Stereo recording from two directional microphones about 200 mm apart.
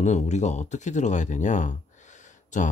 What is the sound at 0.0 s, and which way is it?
Speech, 35° left (ahead or behind).